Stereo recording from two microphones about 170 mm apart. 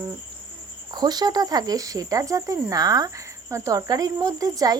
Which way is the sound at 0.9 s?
25° right (ahead or behind).